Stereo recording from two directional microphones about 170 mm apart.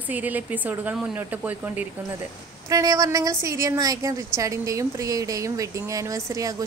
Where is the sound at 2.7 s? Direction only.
20° right (ahead or behind).